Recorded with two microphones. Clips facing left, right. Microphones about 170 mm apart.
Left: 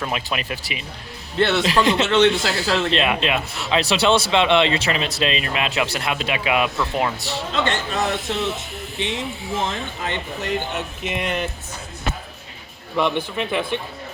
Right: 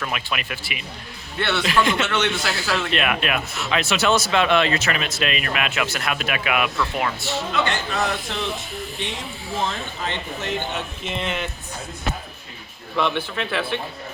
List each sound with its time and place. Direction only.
0.0 s speech: 30° left (ahead or behind)
7.2 s speech: 35° left (ahead or behind)
7.9 s speech: 25° left (ahead or behind)
10.6 s speech: 10° left (ahead or behind)
13.0 s speech: 15° left (ahead or behind)